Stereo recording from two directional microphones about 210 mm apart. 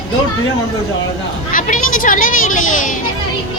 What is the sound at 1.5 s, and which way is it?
Speech, 40° left (ahead or behind).